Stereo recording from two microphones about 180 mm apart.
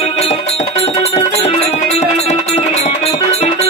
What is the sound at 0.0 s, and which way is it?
Music, 35° left (ahead or behind).